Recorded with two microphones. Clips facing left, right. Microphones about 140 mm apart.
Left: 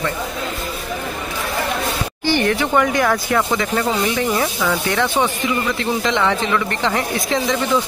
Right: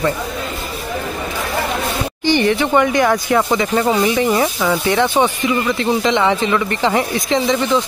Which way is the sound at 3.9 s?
25° right (ahead or behind).